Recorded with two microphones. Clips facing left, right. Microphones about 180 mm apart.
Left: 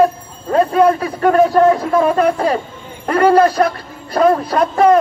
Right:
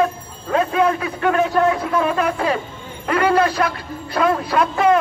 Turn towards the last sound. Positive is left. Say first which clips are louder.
# left 4 dB
turn(degrees=40)  # may be behind; listen again after turning